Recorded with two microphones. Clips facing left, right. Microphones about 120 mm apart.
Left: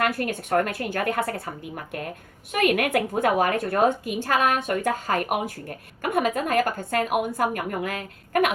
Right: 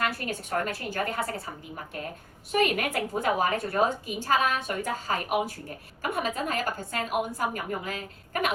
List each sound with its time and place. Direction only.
0.0 s a woman's voice: 60° left (ahead or behind)
2.5 s a woman's voice: 60° left (ahead or behind)